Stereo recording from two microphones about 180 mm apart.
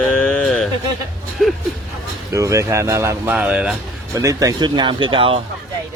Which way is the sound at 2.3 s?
15° right (ahead or behind).